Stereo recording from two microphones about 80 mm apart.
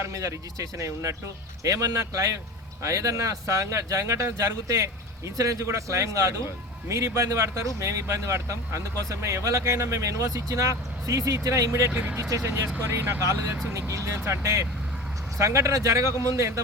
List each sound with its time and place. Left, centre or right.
0.0 s speech: right
11.9 s speech: right
12.1 s speech: right